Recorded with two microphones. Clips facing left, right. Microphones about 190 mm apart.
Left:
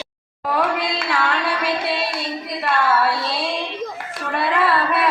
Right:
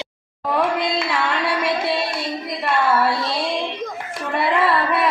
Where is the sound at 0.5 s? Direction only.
20° right (ahead or behind).